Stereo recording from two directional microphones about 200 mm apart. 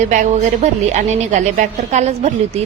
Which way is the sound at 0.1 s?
35° right (ahead or behind).